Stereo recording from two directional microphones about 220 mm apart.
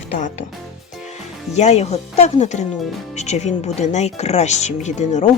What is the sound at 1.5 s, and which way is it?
Speech, 30° left (ahead or behind).